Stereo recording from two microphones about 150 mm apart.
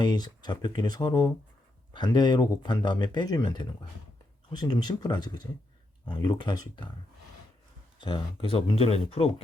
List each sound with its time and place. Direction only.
0.0 s speech: 30° left (ahead or behind)
7.9 s speech: 35° left (ahead or behind)